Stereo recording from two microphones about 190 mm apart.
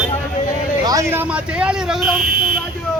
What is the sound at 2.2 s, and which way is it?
Speech, 50° right (ahead or behind).